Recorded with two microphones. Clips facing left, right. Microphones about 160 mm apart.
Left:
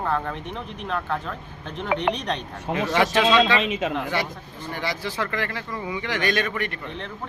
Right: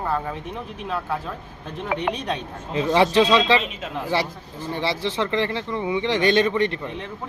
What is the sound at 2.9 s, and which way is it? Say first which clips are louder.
Speech: right 3 dB; 30° right (ahead or behind).